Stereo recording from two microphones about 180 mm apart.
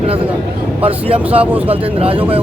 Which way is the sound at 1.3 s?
10° right (ahead or behind).